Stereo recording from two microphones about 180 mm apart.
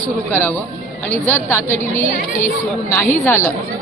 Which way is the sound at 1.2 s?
15° left (ahead or behind).